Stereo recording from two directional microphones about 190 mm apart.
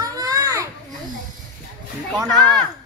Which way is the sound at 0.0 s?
20° right (ahead or behind).